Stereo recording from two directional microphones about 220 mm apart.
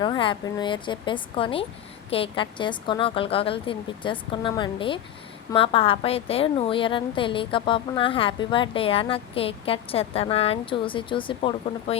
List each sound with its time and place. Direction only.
0.0 s a woman's voice: 20° left (ahead or behind)